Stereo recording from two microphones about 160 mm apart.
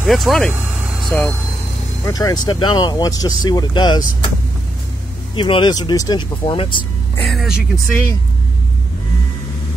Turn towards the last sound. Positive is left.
turn(degrees=0)  # may be behind; listen again after turning